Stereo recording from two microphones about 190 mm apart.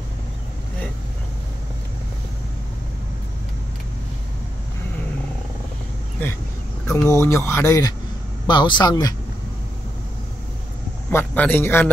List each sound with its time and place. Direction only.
6.9 s speech: 15° left (ahead or behind)
11.1 s speech: 10° left (ahead or behind)